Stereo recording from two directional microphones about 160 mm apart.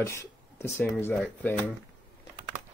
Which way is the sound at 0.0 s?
15° left (ahead or behind).